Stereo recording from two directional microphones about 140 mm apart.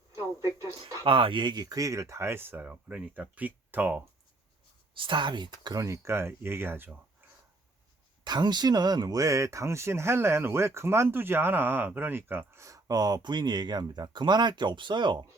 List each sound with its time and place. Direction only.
0.2 s speech: 20° right (ahead or behind)
1.0 s speech: 40° right (ahead or behind); by 4.0 s 15° right (ahead or behind)
4.9 s speech: 35° right (ahead or behind); by 6.9 s 15° right (ahead or behind)
8.2 s speech: 30° right (ahead or behind)